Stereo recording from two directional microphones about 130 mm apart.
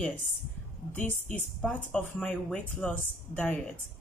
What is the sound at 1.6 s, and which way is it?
A woman's voice, 10° left (ahead or behind).